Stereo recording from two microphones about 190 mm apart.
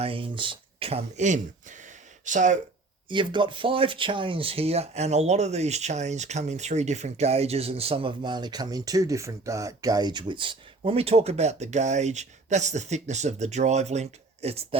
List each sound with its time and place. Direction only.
0.0 s speech: 30° right (ahead or behind)
3.1 s speech: 25° right (ahead or behind)